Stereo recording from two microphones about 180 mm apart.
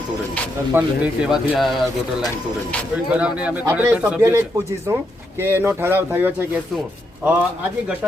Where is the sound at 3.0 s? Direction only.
5° right (ahead or behind).